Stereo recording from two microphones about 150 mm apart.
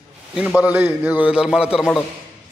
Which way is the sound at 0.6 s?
10° right (ahead or behind).